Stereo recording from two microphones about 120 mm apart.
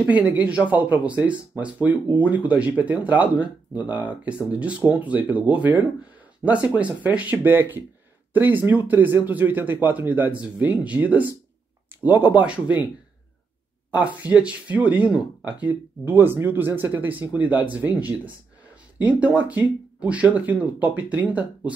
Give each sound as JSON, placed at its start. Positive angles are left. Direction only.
{"t": 0.0, "sound": "speech", "side_deg": -10}
{"t": 13.9, "sound": "speech", "side_deg": -10}